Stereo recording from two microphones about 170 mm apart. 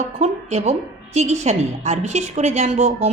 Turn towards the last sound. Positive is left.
turn(degrees=-40)  # may be behind; listen again after turning